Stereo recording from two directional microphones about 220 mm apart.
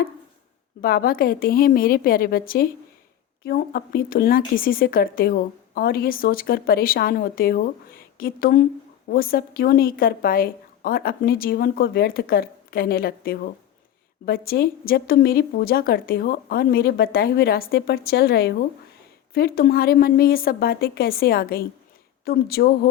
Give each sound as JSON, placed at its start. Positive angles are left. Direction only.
{"t": 0.8, "sound": "a woman's voice", "side_deg": 45}